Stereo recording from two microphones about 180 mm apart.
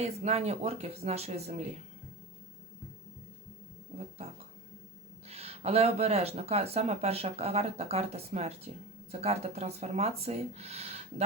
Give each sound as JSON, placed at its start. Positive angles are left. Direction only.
{"t": 0.0, "sound": "speech", "side_deg": -35}
{"t": 5.3, "sound": "speech", "side_deg": -35}